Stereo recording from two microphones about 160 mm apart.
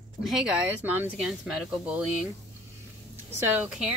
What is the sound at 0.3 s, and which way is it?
Speech, 5° right (ahead or behind).